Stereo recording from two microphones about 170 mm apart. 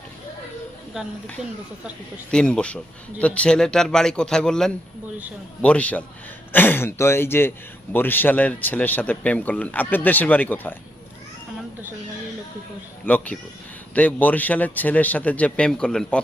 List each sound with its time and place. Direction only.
2.3 s speech: 5° left (ahead or behind)
13.1 s speech: 10° left (ahead or behind)